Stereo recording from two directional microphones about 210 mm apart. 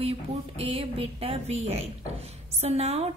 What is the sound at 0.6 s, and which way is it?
Speech, 25° right (ahead or behind).